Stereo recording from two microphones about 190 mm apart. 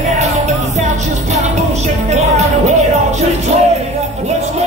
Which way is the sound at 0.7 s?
35° right (ahead or behind).